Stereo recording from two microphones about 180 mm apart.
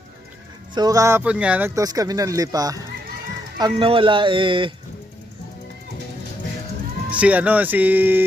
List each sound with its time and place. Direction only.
0.7 s speech: 20° right (ahead or behind)
7.1 s speech: 5° right (ahead or behind)